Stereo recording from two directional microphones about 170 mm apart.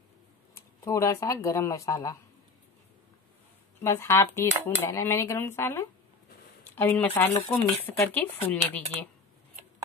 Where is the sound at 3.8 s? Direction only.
15° left (ahead or behind).